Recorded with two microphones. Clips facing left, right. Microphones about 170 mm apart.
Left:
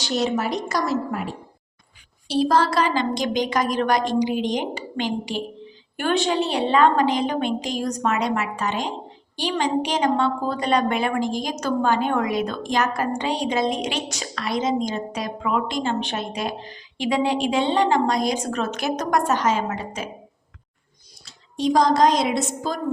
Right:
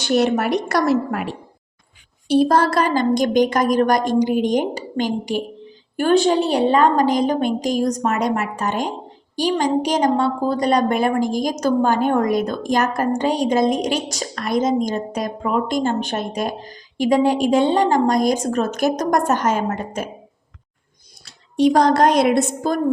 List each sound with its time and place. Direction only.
0.0 s a woman's voice: 60° right (ahead or behind)
2.2 s a woman's voice: 55° right (ahead or behind)
21.2 s a woman's voice: 65° right (ahead or behind)